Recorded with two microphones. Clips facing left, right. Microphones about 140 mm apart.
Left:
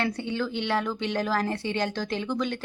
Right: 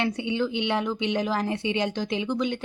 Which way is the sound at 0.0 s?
20° right (ahead or behind).